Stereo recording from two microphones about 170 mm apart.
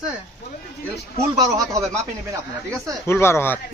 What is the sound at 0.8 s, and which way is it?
A man's voice, 20° right (ahead or behind).